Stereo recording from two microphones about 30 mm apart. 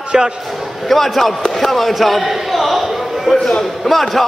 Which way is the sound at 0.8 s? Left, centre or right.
Centre.